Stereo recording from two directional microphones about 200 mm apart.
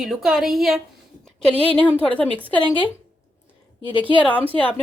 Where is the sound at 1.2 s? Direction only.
5° left (ahead or behind).